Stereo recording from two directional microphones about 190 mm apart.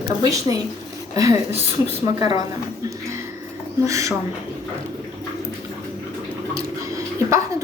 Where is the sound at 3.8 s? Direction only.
15° right (ahead or behind).